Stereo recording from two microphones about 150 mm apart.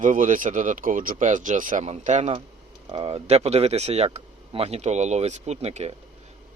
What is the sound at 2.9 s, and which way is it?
Speech, 40° right (ahead or behind).